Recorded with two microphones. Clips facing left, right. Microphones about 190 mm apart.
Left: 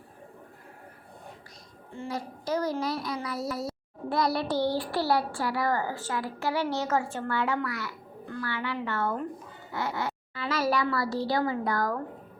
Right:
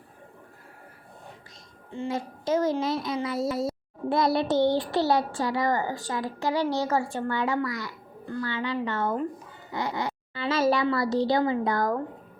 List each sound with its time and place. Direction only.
1.9 s a child's voice: 20° right (ahead or behind)
9.7 s music: 15° right (ahead or behind)
10.3 s a woman's voice: 25° right (ahead or behind)